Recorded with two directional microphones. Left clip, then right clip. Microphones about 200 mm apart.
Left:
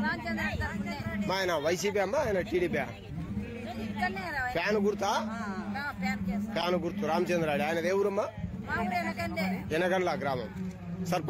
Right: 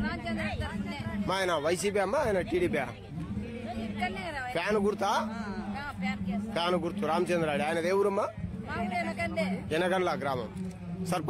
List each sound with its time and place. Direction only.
1.2 s a man's voice: 15° right (ahead or behind)
4.0 s a man's voice: 15° right (ahead or behind)